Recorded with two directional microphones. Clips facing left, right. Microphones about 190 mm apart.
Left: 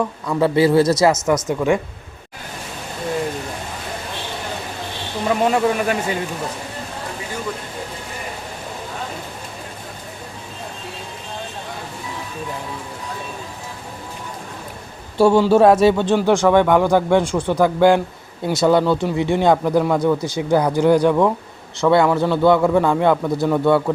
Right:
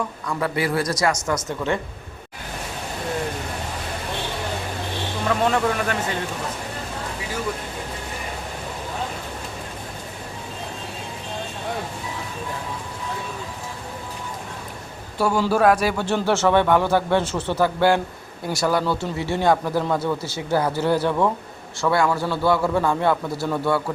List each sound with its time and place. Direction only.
0.3 s a man's voice: 25° left (ahead or behind)
1.5 s a man's voice: 15° left (ahead or behind)
5.3 s a man's voice: 10° left (ahead or behind)
15.2 s a man's voice: 25° left (ahead or behind)